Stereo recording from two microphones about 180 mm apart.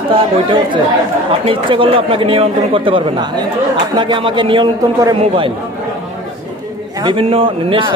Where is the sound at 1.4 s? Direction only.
30° right (ahead or behind).